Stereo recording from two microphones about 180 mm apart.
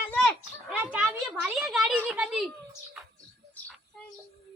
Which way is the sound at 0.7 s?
5° right (ahead or behind).